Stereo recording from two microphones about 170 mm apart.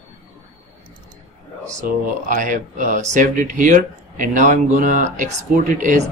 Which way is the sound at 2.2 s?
50° right (ahead or behind).